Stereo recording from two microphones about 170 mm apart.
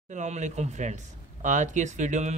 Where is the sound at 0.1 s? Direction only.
45° right (ahead or behind).